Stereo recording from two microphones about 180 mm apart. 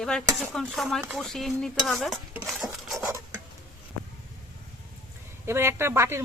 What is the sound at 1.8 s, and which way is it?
Stir, centre (ahead or behind).